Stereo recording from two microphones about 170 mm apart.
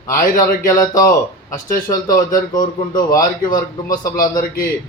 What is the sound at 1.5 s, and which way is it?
Speech, 55° left (ahead or behind).